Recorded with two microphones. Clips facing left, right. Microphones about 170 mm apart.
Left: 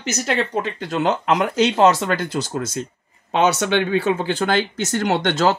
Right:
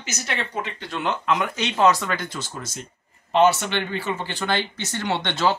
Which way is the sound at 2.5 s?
65° left (ahead or behind).